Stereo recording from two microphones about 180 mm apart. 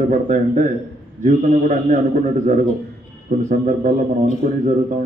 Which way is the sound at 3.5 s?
45° right (ahead or behind).